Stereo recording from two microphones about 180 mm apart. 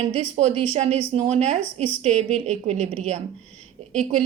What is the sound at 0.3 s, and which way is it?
A woman's voice, 35° right (ahead or behind).